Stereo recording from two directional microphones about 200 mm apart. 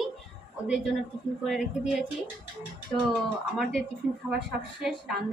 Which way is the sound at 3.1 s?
Centre (ahead or behind).